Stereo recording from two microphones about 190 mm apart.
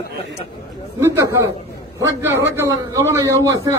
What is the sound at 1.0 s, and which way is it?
A man's voice, 15° right (ahead or behind).